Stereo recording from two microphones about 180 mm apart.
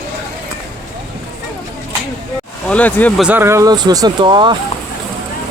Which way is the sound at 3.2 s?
10° right (ahead or behind).